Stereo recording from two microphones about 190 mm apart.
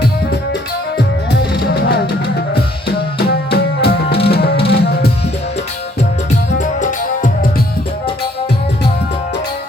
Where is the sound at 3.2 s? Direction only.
55° left (ahead or behind).